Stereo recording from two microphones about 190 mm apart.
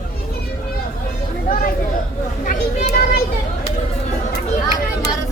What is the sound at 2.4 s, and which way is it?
Children playing, 45° left (ahead or behind).